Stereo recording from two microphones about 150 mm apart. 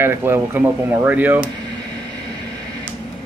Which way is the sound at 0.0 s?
15° right (ahead or behind).